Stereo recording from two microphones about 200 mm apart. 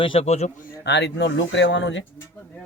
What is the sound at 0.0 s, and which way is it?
Speech, 30° left (ahead or behind).